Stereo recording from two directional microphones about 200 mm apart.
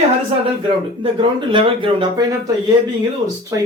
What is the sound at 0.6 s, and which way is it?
Speech, 25° right (ahead or behind).